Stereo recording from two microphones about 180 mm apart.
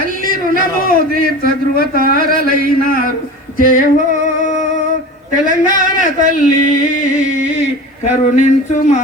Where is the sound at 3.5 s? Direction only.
50° left (ahead or behind).